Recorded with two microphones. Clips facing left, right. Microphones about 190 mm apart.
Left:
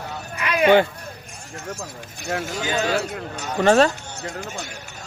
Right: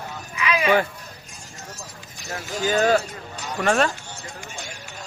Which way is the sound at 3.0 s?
65° left (ahead or behind).